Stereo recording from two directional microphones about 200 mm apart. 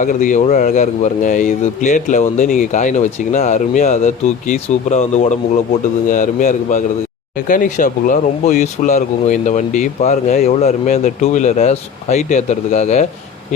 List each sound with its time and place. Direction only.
0.0 s speech: 40° left (ahead or behind)